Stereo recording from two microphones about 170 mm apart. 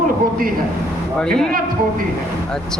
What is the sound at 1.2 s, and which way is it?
Speech, 5° left (ahead or behind).